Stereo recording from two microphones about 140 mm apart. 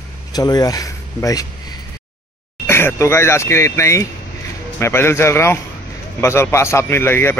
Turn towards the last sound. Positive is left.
turn(degrees=15)  # may be behind; listen again after turning